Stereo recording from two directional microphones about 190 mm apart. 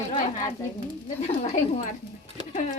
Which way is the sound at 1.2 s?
35° left (ahead or behind).